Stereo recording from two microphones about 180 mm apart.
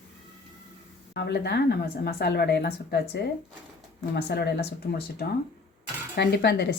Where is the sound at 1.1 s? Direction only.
65° left (ahead or behind).